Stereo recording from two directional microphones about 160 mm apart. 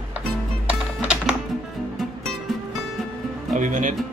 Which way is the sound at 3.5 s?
50° right (ahead or behind).